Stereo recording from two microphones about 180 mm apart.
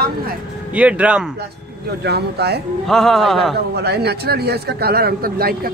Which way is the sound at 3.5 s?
65° right (ahead or behind).